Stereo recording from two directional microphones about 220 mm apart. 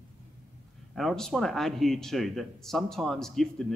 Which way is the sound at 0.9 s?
Centre (ahead or behind).